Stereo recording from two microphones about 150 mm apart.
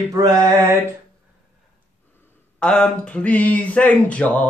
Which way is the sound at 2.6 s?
5° left (ahead or behind).